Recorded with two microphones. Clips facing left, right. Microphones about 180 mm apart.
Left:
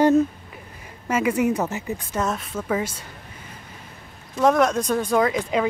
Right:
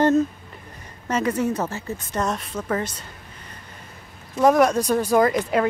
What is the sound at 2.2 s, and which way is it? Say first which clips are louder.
Speech: right 1 dB; centre (ahead or behind).